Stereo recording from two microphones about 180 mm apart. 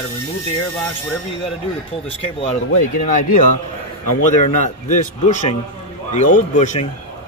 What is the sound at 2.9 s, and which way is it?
A man's voice, 45° left (ahead or behind).